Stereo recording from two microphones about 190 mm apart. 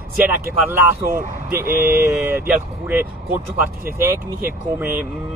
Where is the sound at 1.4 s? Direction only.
10° right (ahead or behind).